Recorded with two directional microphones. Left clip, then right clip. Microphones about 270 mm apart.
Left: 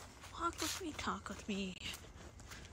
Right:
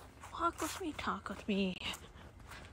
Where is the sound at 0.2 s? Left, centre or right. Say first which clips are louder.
Right 4 dB; centre.